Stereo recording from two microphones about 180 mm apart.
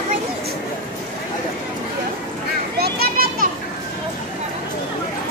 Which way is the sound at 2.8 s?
60° right (ahead or behind).